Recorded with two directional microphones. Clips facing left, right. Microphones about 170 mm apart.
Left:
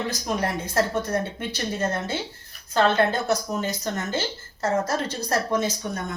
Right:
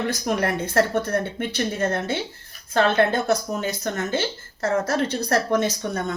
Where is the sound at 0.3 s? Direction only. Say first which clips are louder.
Right 3 dB; 60° right (ahead or behind).